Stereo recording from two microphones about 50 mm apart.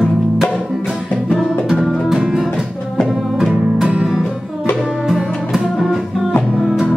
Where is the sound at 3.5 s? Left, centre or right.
Centre.